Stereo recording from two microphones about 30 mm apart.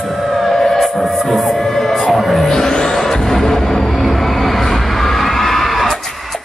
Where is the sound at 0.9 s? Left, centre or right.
Centre.